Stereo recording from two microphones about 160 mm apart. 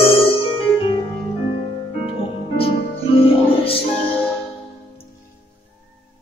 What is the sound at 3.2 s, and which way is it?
Music, 35° left (ahead or behind).